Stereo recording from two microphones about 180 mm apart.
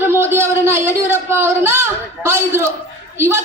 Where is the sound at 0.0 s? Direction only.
10° right (ahead or behind).